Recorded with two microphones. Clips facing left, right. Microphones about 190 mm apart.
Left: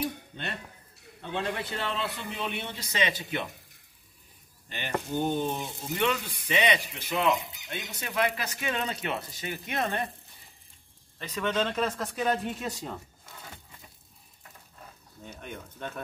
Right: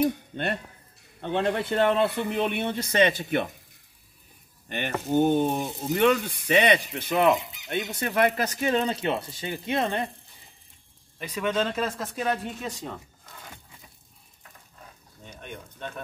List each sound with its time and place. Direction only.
0.0 s a man's voice: 60° right (ahead or behind)
4.6 s speech: 60° right (ahead or behind); by 10.1 s 20° right (ahead or behind)
11.1 s speech: 10° right (ahead or behind); by 12.9 s 5° left (ahead or behind)